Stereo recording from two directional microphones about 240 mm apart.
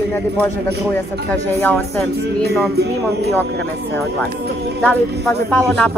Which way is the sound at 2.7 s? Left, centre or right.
Right.